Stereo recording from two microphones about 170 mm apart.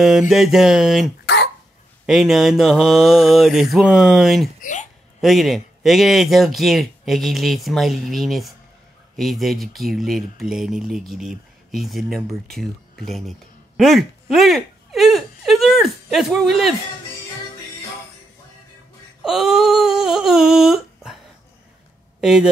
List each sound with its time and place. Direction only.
0.3 s speech: centre (ahead or behind)
1.2 s cough: 80° left
2.0 s speech: centre (ahead or behind)
4.6 s speech: 45° left (ahead or behind)
5.2 s speech: centre (ahead or behind)
14.2 s a sound: centre (ahead or behind)
19.2 s speech: centre (ahead or behind)
22.2 s speech: 5° right (ahead or behind)